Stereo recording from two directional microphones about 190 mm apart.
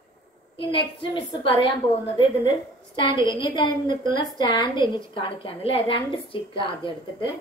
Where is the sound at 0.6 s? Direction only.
25° left (ahead or behind).